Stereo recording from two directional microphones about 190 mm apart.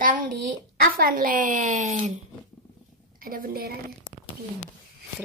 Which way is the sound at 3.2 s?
50° right (ahead or behind).